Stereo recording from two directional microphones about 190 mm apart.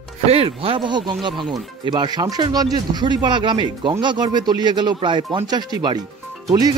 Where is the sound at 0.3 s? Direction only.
30° right (ahead or behind).